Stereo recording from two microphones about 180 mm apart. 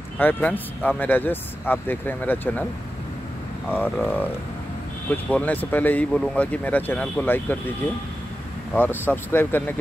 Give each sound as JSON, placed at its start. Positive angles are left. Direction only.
{"t": 0.2, "sound": "speech", "side_deg": 10}
{"t": 3.7, "sound": "speech", "side_deg": 10}
{"t": 8.7, "sound": "speech", "side_deg": 10}